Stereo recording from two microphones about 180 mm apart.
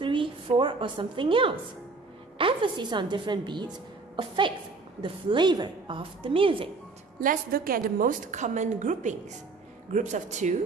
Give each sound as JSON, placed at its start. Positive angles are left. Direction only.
{"t": 0.0, "sound": "a woman's voice", "side_deg": -25}
{"t": 7.2, "sound": "a woman's voice", "side_deg": -55}